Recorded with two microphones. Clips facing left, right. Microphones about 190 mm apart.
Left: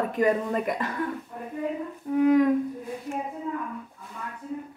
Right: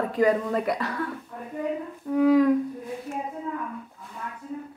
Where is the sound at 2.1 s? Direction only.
20° left (ahead or behind).